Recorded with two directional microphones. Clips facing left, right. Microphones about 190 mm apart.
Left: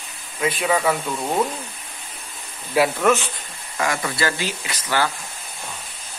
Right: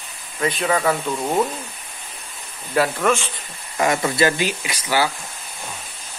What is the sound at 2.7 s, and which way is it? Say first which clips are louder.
Speech: left 1 dB; 10° left (ahead or behind).